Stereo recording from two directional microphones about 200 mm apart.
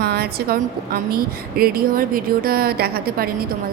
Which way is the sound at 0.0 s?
50° right (ahead or behind).